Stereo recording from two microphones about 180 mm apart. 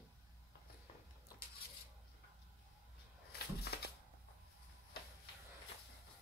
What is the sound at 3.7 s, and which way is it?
Shuffling cards, 65° left (ahead or behind).